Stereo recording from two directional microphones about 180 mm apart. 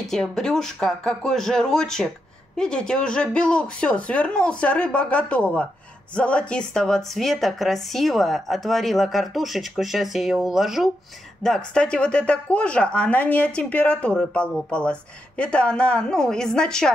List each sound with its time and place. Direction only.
0.1 s speech: 5° left (ahead or behind)